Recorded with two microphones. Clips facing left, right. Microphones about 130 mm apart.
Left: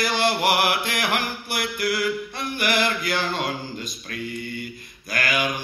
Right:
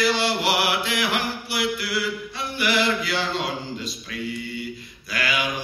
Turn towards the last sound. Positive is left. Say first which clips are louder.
# left 1 dB
turn(degrees=50)  # may be behind; listen again after turning